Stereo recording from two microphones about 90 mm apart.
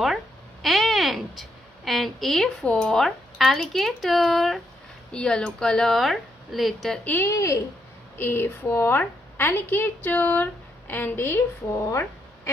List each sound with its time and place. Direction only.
0.0 s speech: centre (ahead or behind)
7.2 s a woman's voice: 35° left (ahead or behind)